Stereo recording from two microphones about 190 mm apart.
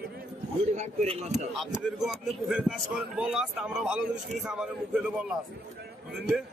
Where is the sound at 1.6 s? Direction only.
Centre (ahead or behind).